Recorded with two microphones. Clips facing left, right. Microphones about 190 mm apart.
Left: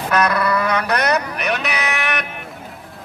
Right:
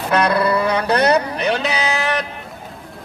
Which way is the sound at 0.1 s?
30° right (ahead or behind).